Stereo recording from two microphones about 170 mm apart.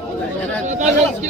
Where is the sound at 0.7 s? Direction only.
45° right (ahead or behind).